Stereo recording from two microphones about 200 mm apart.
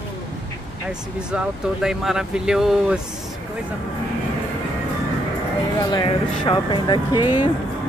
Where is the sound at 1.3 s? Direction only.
5° right (ahead or behind).